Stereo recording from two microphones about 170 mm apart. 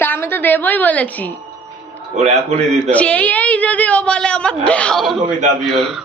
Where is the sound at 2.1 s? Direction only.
40° right (ahead or behind).